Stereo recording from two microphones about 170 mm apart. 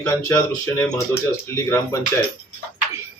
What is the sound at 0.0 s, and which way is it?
Speech, 15° left (ahead or behind).